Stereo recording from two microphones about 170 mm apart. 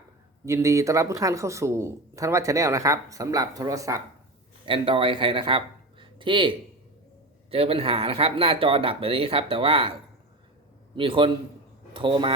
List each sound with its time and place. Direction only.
0.4 s speech: 20° right (ahead or behind)
4.6 s speech: 30° right (ahead or behind)
10.9 s speech: 30° right (ahead or behind)